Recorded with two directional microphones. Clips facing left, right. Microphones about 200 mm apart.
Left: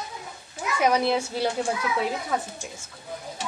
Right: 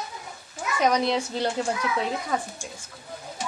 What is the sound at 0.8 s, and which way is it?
A woman's voice, 5° left (ahead or behind).